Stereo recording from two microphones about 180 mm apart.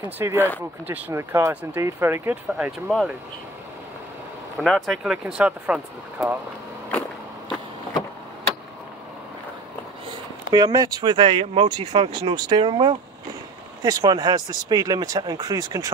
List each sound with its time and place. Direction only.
0.2 s speech: 15° right (ahead or behind)
4.6 s speech: centre (ahead or behind)
10.5 s speech: 20° right (ahead or behind)